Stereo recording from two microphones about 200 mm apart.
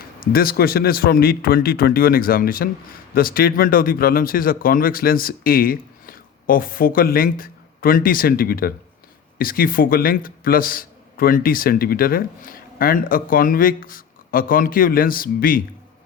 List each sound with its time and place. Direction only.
0.3 s a man's voice: 50° left (ahead or behind)